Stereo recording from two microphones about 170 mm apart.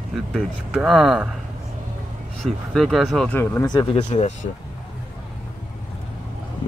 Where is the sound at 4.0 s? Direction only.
40° left (ahead or behind).